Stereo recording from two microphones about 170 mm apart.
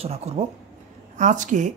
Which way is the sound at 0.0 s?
40° right (ahead or behind).